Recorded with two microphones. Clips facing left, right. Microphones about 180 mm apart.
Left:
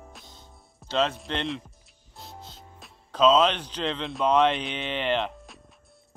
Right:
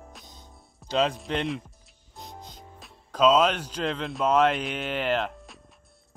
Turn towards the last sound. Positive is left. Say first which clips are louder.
# even
turn(degrees=0)  # may be behind; listen again after turning